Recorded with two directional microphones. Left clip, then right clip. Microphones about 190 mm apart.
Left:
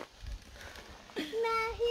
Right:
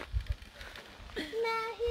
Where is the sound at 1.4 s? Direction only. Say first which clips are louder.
Left 2 dB; 30° left (ahead or behind).